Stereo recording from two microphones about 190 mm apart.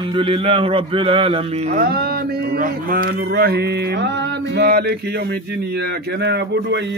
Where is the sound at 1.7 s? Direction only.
55° right (ahead or behind).